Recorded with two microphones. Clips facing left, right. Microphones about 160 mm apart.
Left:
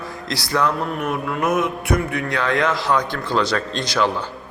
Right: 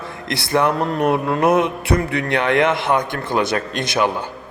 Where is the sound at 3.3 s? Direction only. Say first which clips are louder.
Right 1 dB; 10° right (ahead or behind).